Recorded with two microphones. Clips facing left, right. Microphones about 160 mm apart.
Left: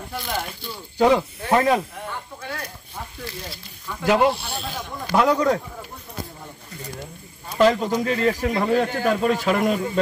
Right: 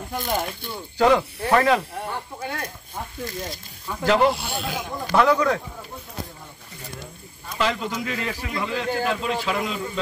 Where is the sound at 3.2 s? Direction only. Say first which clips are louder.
Right 5 dB; 45° right (ahead or behind).